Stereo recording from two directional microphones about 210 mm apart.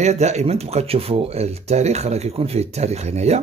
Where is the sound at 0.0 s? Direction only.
30° right (ahead or behind).